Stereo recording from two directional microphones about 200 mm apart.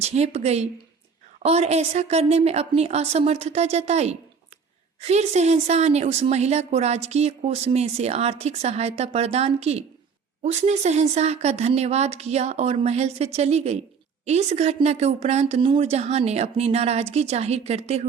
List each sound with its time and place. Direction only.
0.0 s a woman's voice: 35° right (ahead or behind)